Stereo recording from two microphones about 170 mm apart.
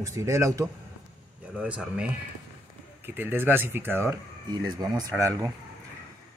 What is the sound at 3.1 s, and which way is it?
Speech, 10° right (ahead or behind).